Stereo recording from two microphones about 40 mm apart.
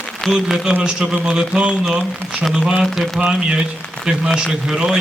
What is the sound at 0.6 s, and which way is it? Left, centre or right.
Speech, centre.